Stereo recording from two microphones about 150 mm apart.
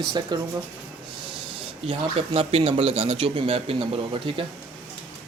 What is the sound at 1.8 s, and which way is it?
Speech, 40° right (ahead or behind).